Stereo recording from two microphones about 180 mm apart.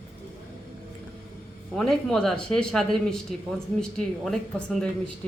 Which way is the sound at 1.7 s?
5° left (ahead or behind).